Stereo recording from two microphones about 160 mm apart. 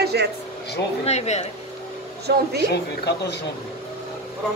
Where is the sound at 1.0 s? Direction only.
40° left (ahead or behind).